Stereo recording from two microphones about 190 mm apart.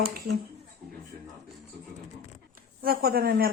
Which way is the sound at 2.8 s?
55° right (ahead or behind).